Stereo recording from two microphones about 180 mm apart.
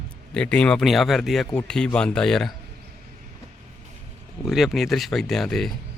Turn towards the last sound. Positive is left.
turn(degrees=0)  # may be behind; listen again after turning